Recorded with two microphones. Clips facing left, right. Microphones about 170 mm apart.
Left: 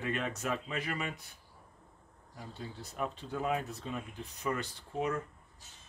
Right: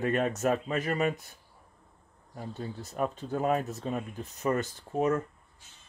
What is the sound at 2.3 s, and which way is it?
Speech, 45° right (ahead or behind).